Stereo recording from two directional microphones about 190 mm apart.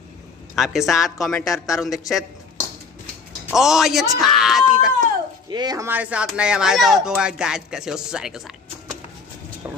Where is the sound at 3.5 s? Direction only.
Centre (ahead or behind).